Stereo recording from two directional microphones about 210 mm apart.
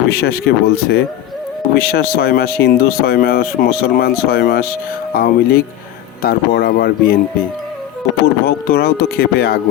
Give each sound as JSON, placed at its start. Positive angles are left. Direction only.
{"t": 0.1, "sound": "speech", "side_deg": 50}
{"t": 8.4, "sound": "speech", "side_deg": 45}